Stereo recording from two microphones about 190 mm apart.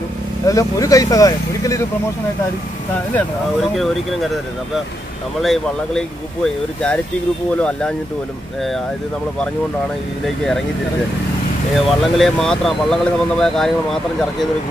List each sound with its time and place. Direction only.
0.5 s speech: 15° left (ahead or behind)
3.7 s speech: centre (ahead or behind)
5.4 s speech: centre (ahead or behind)
10.2 s speech: centre (ahead or behind)
11.7 s speech: centre (ahead or behind)